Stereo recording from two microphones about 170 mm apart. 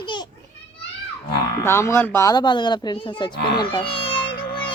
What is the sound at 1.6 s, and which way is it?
A child's voice, 15° left (ahead or behind).